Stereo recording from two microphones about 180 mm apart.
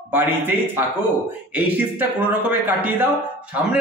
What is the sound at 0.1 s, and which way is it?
Speech, 10° right (ahead or behind).